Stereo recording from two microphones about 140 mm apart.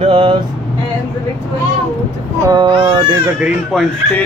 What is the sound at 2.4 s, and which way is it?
Mantra, 30° right (ahead or behind).